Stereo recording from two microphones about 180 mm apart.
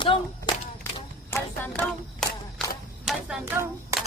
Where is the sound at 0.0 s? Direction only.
30° left (ahead or behind).